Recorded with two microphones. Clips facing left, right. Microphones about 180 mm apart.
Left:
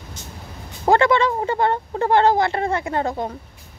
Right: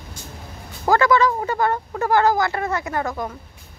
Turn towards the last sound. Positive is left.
turn(degrees=30)  # may be behind; listen again after turning